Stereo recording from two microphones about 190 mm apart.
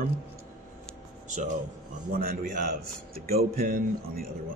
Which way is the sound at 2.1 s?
50° right (ahead or behind).